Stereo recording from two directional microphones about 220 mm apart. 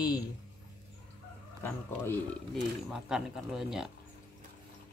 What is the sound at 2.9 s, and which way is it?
Speech, 5° right (ahead or behind).